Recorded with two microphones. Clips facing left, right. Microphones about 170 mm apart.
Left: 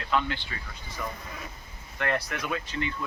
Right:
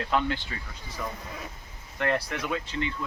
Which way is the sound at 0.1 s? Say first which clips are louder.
Even; 45° right (ahead or behind).